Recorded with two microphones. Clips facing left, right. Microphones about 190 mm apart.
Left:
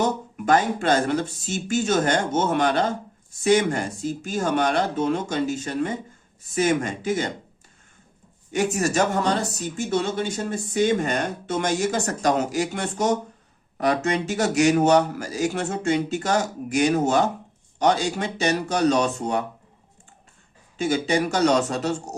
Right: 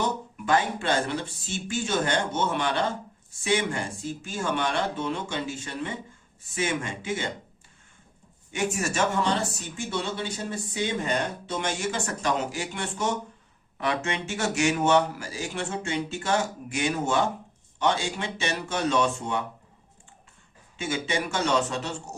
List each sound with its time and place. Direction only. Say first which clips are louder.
0.0 s speech: left 5 dB; 45° left (ahead or behind)
8.5 s speech: left 6 dB; 40° left (ahead or behind)
20.7 s speech: left 7 dB; 35° left (ahead or behind)